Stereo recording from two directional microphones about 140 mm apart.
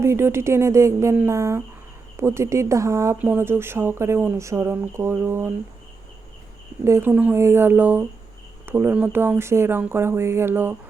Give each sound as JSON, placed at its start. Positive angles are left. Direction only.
{"t": 0.0, "sound": "a woman's voice", "side_deg": -20}
{"t": 6.8, "sound": "speech", "side_deg": -15}